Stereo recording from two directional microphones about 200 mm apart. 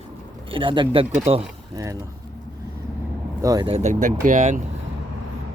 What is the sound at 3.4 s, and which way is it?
Speech, 20° right (ahead or behind).